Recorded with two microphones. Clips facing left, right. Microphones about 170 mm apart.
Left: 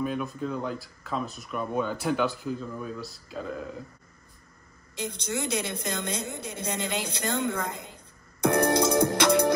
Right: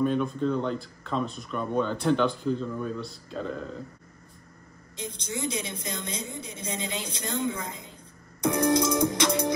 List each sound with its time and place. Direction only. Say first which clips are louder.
0.0 s speech: right 5 dB; 5° left (ahead or behind)
4.9 s a woman's voice: left 3 dB; 65° left (ahead or behind)